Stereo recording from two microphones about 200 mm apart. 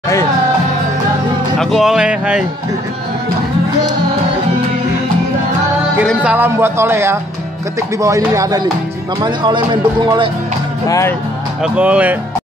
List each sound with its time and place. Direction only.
1.6 s speech: centre (ahead or behind)
6.0 s speech: 5° right (ahead or behind); by 10.3 s 25° right (ahead or behind)
10.9 s speech: 15° left (ahead or behind)
11.6 s speech: 5° right (ahead or behind)